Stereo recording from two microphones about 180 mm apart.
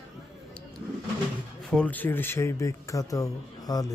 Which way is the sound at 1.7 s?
10° left (ahead or behind).